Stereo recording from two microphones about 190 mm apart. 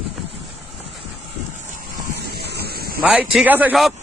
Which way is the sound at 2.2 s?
60° right (ahead or behind).